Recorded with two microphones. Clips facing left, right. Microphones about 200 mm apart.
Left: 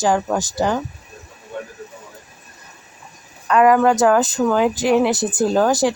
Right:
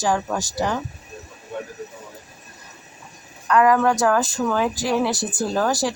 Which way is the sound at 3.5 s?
20° left (ahead or behind).